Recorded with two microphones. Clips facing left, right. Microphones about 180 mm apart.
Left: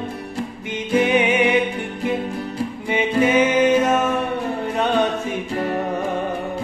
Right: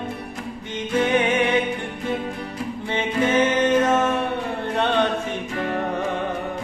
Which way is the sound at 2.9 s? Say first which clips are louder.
Left 4 dB; 10° left (ahead or behind).